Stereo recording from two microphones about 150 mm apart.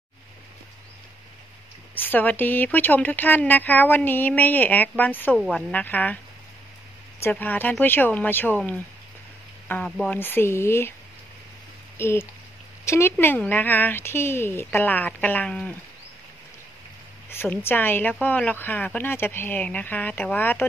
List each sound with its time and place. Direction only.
2.0 s speech: 10° left (ahead or behind)
7.2 s speech: 15° left (ahead or behind)
12.0 s speech: 15° left (ahead or behind)
17.3 s speech: 15° left (ahead or behind)